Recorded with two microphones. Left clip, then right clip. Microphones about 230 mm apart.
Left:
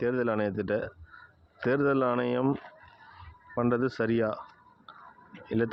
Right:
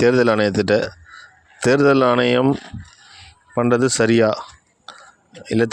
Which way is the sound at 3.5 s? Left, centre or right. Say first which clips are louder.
Right 11 dB; right.